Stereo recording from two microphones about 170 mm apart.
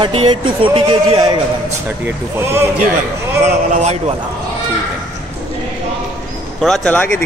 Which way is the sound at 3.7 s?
40° right (ahead or behind).